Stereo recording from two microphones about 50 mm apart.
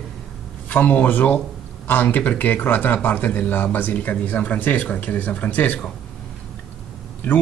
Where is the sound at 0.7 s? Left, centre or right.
Left.